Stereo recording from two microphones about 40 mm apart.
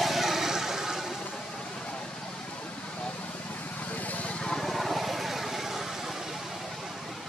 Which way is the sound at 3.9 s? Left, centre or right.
Left.